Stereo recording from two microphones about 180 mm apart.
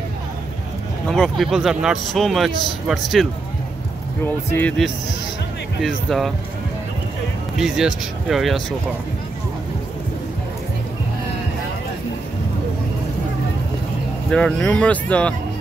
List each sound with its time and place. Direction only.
1.0 s speech: 5° left (ahead or behind)
4.2 s speech: 10° left (ahead or behind)
7.5 s speech: 5° right (ahead or behind)
14.3 s speech: 5° left (ahead or behind)